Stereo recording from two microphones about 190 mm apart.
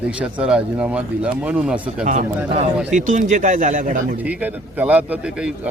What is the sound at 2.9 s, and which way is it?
Speech, 40° right (ahead or behind).